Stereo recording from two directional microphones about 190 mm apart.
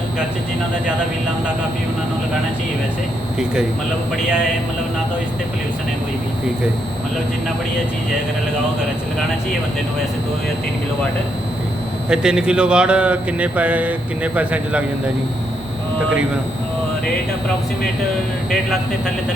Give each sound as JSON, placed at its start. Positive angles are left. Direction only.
{"t": 12.0, "sound": "a man's voice", "side_deg": -5}